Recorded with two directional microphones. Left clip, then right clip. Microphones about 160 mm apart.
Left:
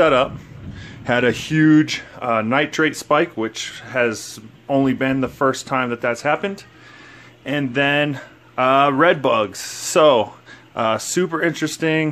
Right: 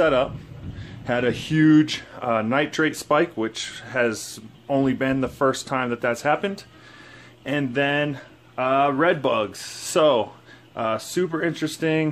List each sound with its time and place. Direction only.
0.0 s a man's voice: 20° left (ahead or behind)
1.5 s speech: 10° left (ahead or behind)